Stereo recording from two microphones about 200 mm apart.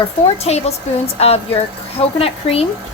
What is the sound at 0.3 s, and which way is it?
A woman's voice, 30° left (ahead or behind).